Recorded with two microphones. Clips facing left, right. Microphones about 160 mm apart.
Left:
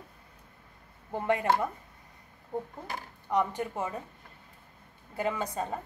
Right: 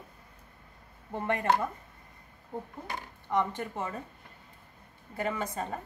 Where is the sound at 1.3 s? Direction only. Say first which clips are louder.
Left 1 dB; 15° left (ahead or behind).